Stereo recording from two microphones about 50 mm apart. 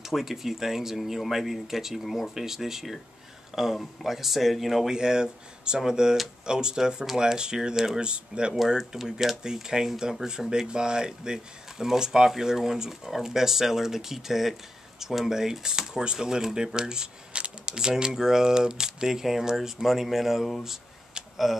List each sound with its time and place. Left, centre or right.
0.0 s speech: centre
4.9 s speech: centre
8.5 s speech: centre